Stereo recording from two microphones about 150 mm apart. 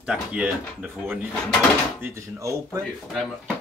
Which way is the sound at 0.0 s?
5° right (ahead or behind).